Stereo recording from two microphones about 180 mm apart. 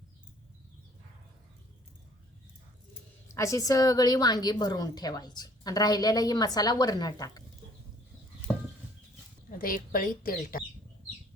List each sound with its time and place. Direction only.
3.3 s a woman's voice: 15° left (ahead or behind)
8.5 s a sound: 5° right (ahead or behind)
9.6 s speech: 50° left (ahead or behind)